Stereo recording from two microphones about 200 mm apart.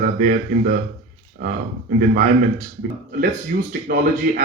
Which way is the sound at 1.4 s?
45° right (ahead or behind).